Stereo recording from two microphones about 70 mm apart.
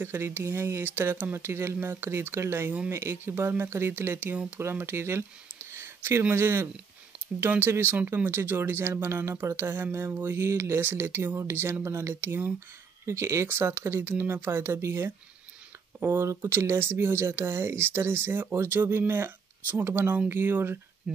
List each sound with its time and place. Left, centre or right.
0.0 s speech: right
5.7 s a sound: right
6.3 s speech: right
13.0 s speech: right